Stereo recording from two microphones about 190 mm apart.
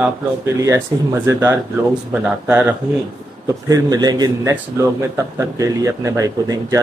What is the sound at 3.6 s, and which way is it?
A man's voice, 20° right (ahead or behind).